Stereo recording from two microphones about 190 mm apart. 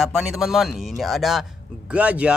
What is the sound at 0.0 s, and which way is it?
Speech, centre (ahead or behind).